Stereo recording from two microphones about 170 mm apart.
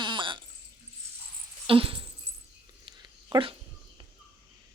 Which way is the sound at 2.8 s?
25° right (ahead or behind).